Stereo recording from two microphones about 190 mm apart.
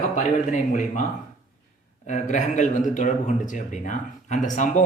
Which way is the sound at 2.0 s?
40° left (ahead or behind).